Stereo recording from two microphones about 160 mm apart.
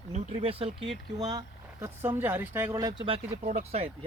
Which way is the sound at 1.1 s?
25° right (ahead or behind).